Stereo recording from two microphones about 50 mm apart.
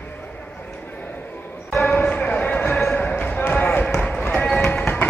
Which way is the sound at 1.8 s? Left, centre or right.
Left.